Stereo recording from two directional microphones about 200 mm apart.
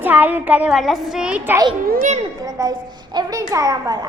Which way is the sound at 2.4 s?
20° right (ahead or behind).